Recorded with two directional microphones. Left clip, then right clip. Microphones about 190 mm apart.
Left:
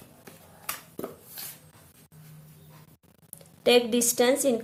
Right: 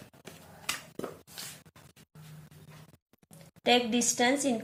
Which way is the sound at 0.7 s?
25° left (ahead or behind).